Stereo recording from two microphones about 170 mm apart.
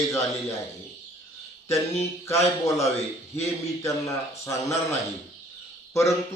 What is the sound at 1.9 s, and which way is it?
A man's voice, 15° left (ahead or behind).